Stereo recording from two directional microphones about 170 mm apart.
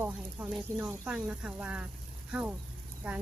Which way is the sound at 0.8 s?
10° right (ahead or behind).